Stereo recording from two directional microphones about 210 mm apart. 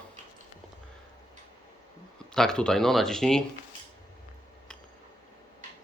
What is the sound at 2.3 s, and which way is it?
Speech, 5° left (ahead or behind).